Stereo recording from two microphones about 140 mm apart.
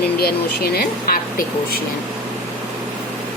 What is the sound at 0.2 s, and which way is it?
Speech, 90° left.